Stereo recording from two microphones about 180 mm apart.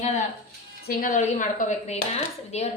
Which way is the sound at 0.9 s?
50° left (ahead or behind).